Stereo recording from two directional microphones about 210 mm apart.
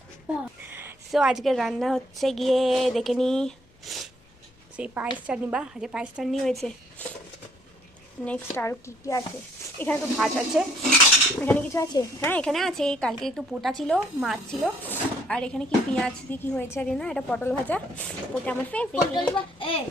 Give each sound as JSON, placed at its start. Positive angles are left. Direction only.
{"t": 0.7, "sound": "a woman's voice", "side_deg": -10}
{"t": 8.2, "sound": "speech", "side_deg": 10}
{"t": 10.5, "sound": "a woman's voice", "side_deg": -5}
{"t": 11.3, "sound": "a woman's voice", "side_deg": 10}
{"t": 19.5, "sound": "a child's voice", "side_deg": 25}